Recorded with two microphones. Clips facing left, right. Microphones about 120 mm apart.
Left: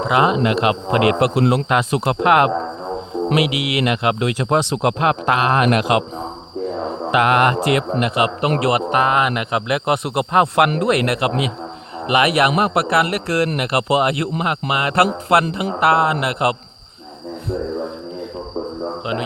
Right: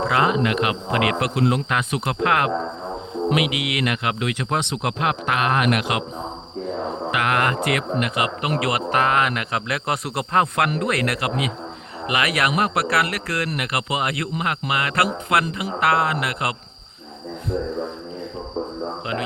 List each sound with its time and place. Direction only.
0.1 s speech: 20° left (ahead or behind)
7.1 s speech: 25° left (ahead or behind)
8.4 s speech: 40° left (ahead or behind)
8.7 s speech: 20° left (ahead or behind)